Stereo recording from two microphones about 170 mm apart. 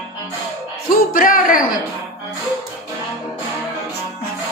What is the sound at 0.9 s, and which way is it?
Speech, 55° left (ahead or behind).